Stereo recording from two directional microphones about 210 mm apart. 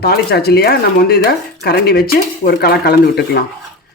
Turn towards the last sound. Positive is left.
turn(degrees=50)  # may be behind; listen again after turning